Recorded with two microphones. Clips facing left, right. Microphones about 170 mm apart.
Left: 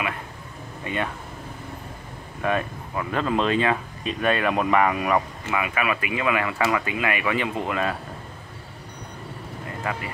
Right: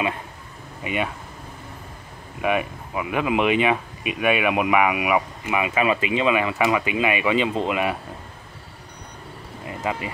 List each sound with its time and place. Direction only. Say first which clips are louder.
0.8 s speech: right 2 dB; 15° right (ahead or behind)
2.4 s speech: right 2 dB; 15° right (ahead or behind)
9.7 s vehicle: right 3 dB; 20° right (ahead or behind)